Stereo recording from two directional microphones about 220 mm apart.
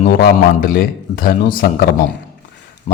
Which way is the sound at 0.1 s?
40° left (ahead or behind).